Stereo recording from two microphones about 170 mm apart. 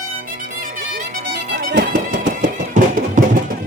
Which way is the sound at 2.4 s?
50° right (ahead or behind).